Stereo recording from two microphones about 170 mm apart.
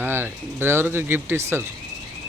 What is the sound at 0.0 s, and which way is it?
Speech, 15° right (ahead or behind).